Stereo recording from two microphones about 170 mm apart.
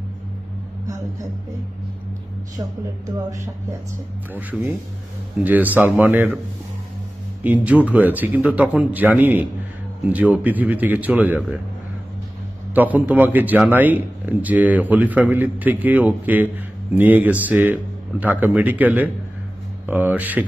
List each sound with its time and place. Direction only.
0.8 s a sound: 20° right (ahead or behind)
4.3 s a man's voice: 10° right (ahead or behind)
7.6 s a man's voice: 10° right (ahead or behind)
12.7 s a man's voice: 10° right (ahead or behind)